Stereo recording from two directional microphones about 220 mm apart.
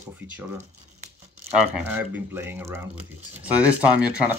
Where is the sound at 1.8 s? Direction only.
10° right (ahead or behind).